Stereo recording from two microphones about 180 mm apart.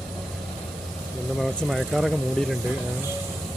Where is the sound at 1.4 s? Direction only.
Centre (ahead or behind).